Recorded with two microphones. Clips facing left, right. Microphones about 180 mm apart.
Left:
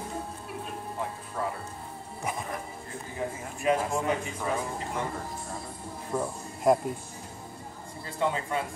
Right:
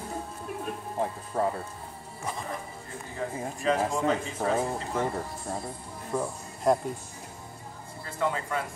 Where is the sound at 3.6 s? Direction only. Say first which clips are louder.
Even; 15° left (ahead or behind).